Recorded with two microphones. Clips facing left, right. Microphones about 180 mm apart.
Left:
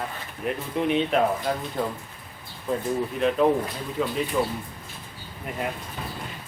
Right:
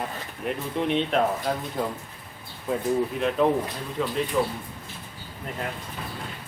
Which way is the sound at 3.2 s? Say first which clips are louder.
Left 5 dB; centre (ahead or behind).